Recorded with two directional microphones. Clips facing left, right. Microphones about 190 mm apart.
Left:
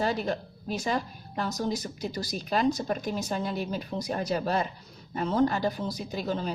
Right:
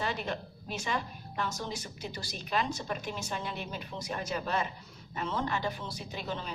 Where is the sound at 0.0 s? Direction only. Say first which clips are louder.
Left 6 dB; 40° left (ahead or behind).